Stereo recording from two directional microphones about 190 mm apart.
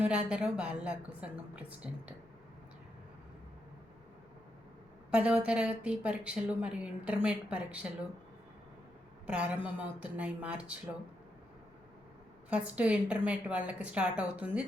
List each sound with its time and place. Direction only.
0.0 s a woman's voice: 5° right (ahead or behind)
5.1 s a woman's voice: 5° right (ahead or behind)
9.2 s a woman's voice: 5° right (ahead or behind)
12.5 s a woman's voice: 5° right (ahead or behind)